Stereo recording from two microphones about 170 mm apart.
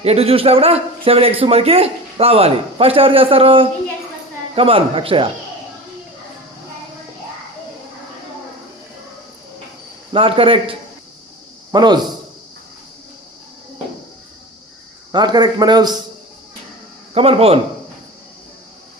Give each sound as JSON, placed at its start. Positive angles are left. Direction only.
{"t": 0.0, "sound": "a man's voice", "side_deg": -35}
{"t": 10.1, "sound": "a man's voice", "side_deg": -30}
{"t": 15.1, "sound": "a man's voice", "side_deg": -25}
{"t": 17.2, "sound": "a man's voice", "side_deg": -35}